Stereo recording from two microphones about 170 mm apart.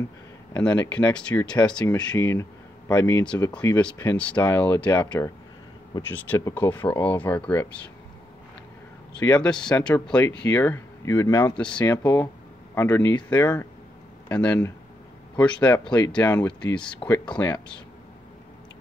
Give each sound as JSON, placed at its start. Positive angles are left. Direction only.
{"t": 0.9, "sound": "speech", "side_deg": 10}
{"t": 2.1, "sound": "speech", "side_deg": 15}
{"t": 9.2, "sound": "speech", "side_deg": 10}